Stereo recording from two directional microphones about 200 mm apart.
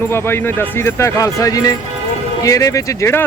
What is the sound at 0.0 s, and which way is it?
Speech, 10° left (ahead or behind).